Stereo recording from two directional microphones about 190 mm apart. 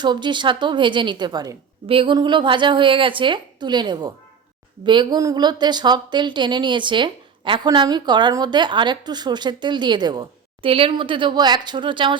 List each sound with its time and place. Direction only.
0.0 s a woman's voice: 25° right (ahead or behind)